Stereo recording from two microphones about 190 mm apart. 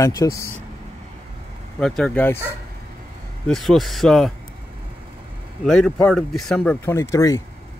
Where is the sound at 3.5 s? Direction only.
Centre (ahead or behind).